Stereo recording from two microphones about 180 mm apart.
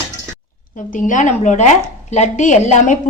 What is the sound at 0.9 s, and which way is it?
Speech, 45° left (ahead or behind).